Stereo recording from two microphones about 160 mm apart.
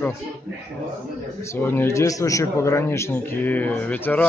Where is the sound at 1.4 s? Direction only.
15° left (ahead or behind).